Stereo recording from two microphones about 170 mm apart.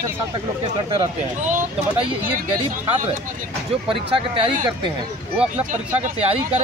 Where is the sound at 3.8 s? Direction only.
30° right (ahead or behind).